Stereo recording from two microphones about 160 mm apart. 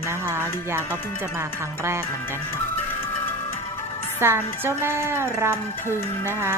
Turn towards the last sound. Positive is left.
turn(degrees=-15)  # may be behind; listen again after turning